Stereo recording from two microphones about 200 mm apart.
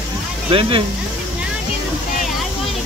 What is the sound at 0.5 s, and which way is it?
Speech, 25° right (ahead or behind).